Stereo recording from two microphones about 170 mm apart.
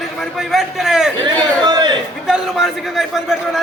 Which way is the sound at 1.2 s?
25° right (ahead or behind).